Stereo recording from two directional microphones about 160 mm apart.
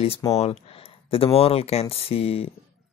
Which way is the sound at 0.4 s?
35° left (ahead or behind).